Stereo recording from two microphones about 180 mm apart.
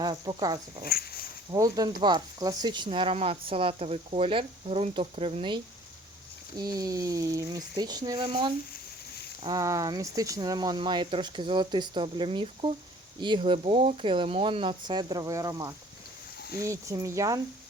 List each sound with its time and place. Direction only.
0.0 s speech: 25° right (ahead or behind)
0.9 s speech: 55° left (ahead or behind)
1.5 s speech: 20° right (ahead or behind)
6.6 s speech: 20° right (ahead or behind)